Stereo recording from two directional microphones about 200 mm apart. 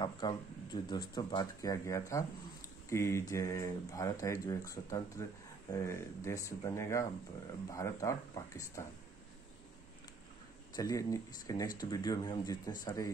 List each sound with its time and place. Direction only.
0.0 s speech: 20° left (ahead or behind)
10.8 s speech: 15° left (ahead or behind)